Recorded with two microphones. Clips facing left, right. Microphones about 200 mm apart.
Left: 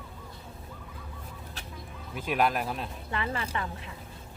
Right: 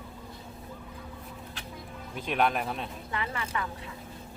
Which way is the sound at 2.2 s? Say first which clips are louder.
Even; 5° left (ahead or behind).